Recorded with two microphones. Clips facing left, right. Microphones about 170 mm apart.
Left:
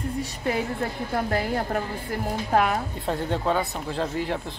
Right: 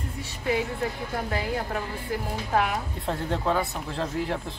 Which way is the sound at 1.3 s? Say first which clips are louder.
Left 2 dB; 45° left (ahead or behind).